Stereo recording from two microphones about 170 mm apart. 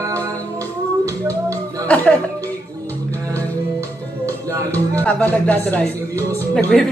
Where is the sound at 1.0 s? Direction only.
20° right (ahead or behind).